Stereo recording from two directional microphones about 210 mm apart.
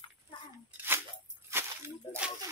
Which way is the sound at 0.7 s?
10° right (ahead or behind).